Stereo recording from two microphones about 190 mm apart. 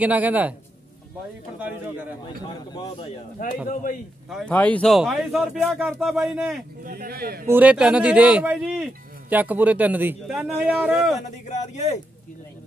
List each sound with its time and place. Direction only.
0.0 s speech: 10° right (ahead or behind)
1.6 s speech: 10° right (ahead or behind)
2.7 s a man's voice: 20° left (ahead or behind)
3.1 s speech: 45° left (ahead or behind)
4.3 s speech: 5° left (ahead or behind)
6.8 s speech: 50° right (ahead or behind)
7.4 s speech: 10° right (ahead or behind)
11.1 s speech: 40° left (ahead or behind)